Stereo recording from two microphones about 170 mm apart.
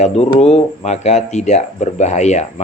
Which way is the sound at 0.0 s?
40° left (ahead or behind).